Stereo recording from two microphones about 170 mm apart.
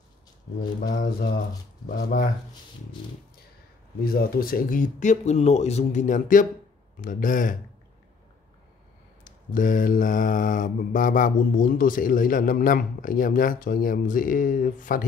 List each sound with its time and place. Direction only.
0.7 s mantra: 50° left (ahead or behind)
1.9 s speech: 60° left (ahead or behind)
4.0 s mantra: 60° left (ahead or behind)
9.2 s mantra: 50° left (ahead or behind)